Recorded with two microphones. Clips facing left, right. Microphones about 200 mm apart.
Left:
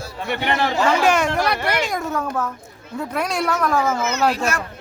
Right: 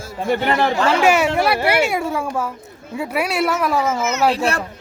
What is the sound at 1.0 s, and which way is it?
Speech, 10° right (ahead or behind).